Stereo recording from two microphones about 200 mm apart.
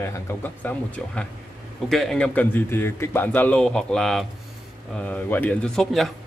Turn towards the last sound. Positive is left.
turn(degrees=0)  # may be behind; listen again after turning